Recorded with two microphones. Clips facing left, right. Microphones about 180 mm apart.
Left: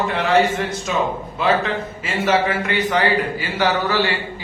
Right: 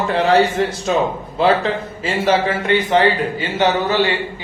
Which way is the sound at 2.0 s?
30° right (ahead or behind).